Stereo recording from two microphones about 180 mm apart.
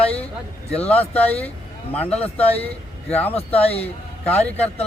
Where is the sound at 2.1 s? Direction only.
35° left (ahead or behind).